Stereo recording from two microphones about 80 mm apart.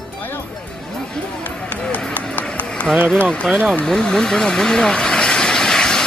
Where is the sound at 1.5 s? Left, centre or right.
Centre.